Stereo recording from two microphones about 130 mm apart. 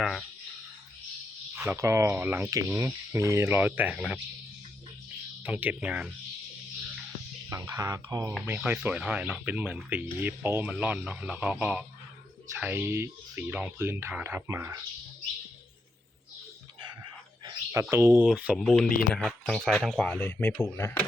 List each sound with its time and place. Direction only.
0.0 s speech: centre (ahead or behind)
1.5 s speech: 20° right (ahead or behind); by 4.2 s 5° right (ahead or behind)
5.5 s speech: 10° right (ahead or behind)
7.5 s speech: 25° right (ahead or behind)
8.4 s speech: 15° right (ahead or behind)
17.7 s speech: 20° right (ahead or behind)
18.5 s speech: centre (ahead or behind)
20.1 s speech: 10° left (ahead or behind)